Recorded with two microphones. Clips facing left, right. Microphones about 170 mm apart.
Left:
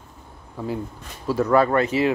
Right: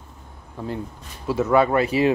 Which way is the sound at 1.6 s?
15° right (ahead or behind).